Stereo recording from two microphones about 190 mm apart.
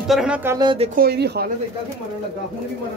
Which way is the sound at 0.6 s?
25° right (ahead or behind).